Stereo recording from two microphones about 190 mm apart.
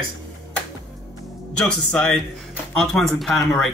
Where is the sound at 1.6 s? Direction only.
5° left (ahead or behind).